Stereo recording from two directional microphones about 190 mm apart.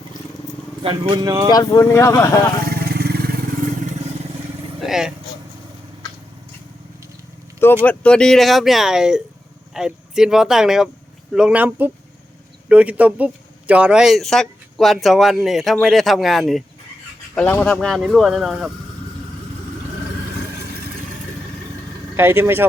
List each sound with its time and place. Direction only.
0.8 s speech: 25° right (ahead or behind)
1.5 s speech: 20° left (ahead or behind)
2.6 s vehicle: 55° right (ahead or behind)
4.8 s vehicle: centre (ahead or behind)
7.9 s speech: 5° left (ahead or behind)
22.1 s speech: 10° right (ahead or behind)